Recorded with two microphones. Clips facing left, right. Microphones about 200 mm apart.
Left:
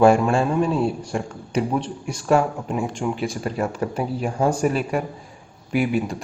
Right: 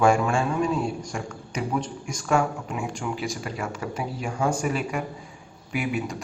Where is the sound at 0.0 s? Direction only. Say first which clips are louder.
Left 5 dB; 35° left (ahead or behind).